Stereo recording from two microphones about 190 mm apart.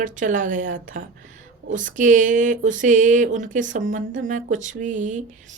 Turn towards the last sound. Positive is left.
turn(degrees=-40)  # may be behind; listen again after turning